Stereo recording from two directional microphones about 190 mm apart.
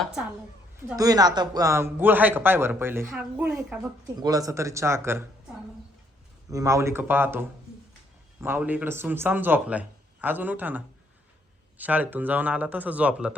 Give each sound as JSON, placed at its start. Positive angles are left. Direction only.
{"t": 0.0, "sound": "a woman's voice", "side_deg": 0}
{"t": 0.8, "sound": "speech", "side_deg": -15}
{"t": 4.1, "sound": "speech", "side_deg": -20}
{"t": 6.5, "sound": "speech", "side_deg": -15}